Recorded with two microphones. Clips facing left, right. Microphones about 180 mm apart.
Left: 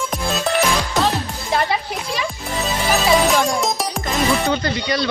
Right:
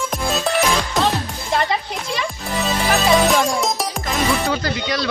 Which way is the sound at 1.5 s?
5° left (ahead or behind).